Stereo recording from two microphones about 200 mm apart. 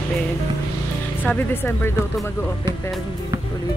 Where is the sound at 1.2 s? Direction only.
10° left (ahead or behind).